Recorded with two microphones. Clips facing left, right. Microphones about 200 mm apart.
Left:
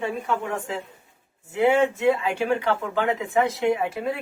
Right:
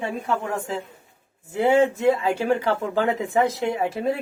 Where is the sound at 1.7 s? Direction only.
40° right (ahead or behind).